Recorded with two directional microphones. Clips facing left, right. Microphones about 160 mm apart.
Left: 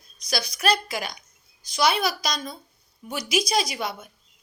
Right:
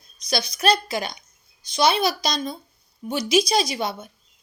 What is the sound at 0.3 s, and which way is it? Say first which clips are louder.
Speech: right 3 dB; 25° right (ahead or behind).